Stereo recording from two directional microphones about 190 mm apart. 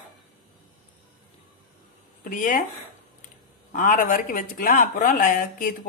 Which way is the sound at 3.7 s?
45° left (ahead or behind).